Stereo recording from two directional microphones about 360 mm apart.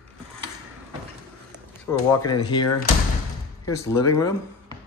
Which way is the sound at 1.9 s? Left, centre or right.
Centre.